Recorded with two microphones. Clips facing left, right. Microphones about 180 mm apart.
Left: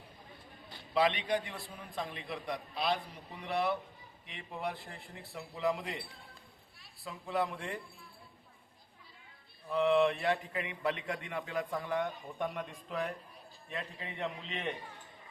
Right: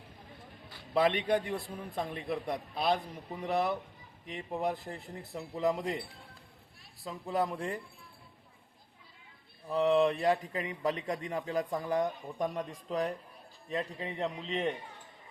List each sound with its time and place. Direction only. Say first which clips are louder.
0.9 s a man's voice: right 3 dB; 50° right (ahead or behind)
7.0 s a man's voice: right 2 dB; 40° right (ahead or behind)
9.6 s a man's voice: right 1 dB; 40° right (ahead or behind)